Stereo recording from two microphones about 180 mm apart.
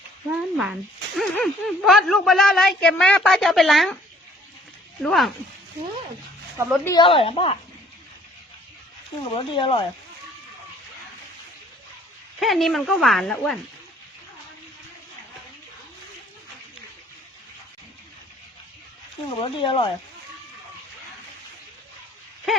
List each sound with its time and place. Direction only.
0.3 s speech: centre (ahead or behind)
5.0 s speech: centre (ahead or behind)
6.8 s speech: 25° left (ahead or behind)
9.3 s speech: 30° left (ahead or behind)
12.4 s speech: centre (ahead or behind)
19.4 s speech: 30° left (ahead or behind)